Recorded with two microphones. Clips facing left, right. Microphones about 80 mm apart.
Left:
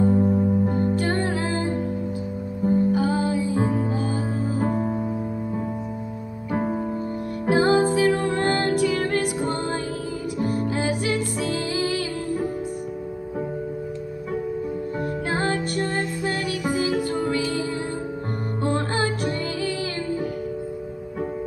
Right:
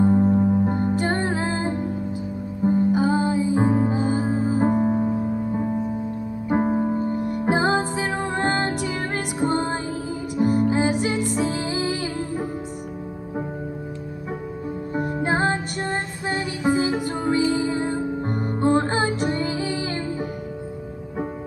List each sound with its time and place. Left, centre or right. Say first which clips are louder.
0.0 s music: right 1 dB; right
6.7 s music: right 4 dB; right
15.0 s music: right 5 dB; right